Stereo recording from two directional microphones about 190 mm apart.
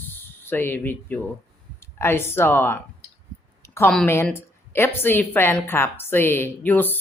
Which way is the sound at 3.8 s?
10° left (ahead or behind).